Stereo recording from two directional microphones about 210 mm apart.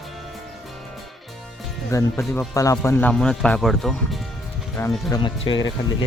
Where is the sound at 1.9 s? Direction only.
15° left (ahead or behind).